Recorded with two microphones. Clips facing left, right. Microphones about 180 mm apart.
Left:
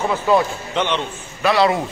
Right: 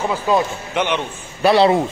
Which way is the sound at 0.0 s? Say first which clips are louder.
Left 1 dB; 10° right (ahead or behind).